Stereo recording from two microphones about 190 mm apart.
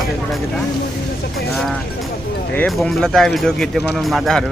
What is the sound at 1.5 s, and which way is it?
Speech, centre (ahead or behind).